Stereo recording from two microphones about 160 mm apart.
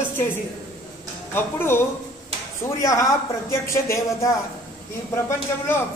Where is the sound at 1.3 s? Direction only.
15° left (ahead or behind).